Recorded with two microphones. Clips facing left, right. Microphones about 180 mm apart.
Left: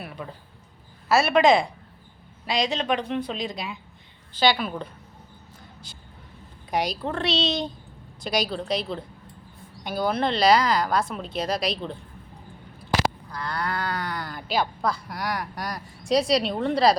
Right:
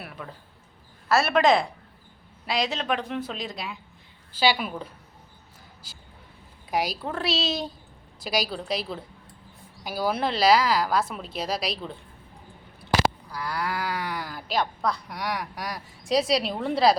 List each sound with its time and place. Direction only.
1.0 s a woman's voice: centre (ahead or behind)
13.3 s speech: 5° right (ahead or behind)